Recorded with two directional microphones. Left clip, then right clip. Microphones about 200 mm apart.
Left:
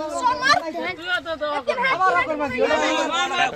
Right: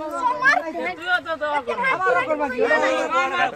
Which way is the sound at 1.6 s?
35° left (ahead or behind).